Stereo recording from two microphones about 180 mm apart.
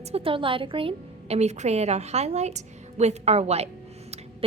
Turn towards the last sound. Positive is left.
turn(degrees=-35)  # may be behind; listen again after turning